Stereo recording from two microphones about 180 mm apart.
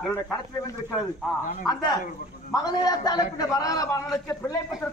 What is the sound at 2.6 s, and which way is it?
A man's voice, 20° left (ahead or behind).